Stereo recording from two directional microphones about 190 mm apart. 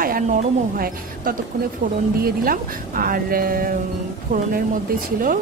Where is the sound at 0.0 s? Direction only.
45° right (ahead or behind).